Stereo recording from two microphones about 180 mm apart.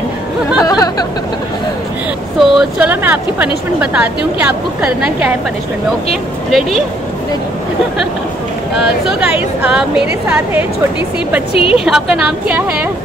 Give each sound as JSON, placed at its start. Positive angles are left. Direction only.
{"t": 0.6, "sound": "a sound", "side_deg": 20}
{"t": 2.3, "sound": "a woman's voice", "side_deg": 0}
{"t": 9.6, "sound": "a woman's voice", "side_deg": -5}
{"t": 11.5, "sound": "a woman's voice", "side_deg": 30}
{"t": 11.8, "sound": "a woman's voice", "side_deg": -5}